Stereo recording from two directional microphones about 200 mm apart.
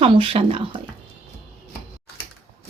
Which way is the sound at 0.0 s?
25° right (ahead or behind).